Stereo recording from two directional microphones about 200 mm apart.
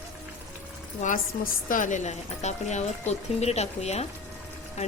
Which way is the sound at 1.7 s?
40° left (ahead or behind).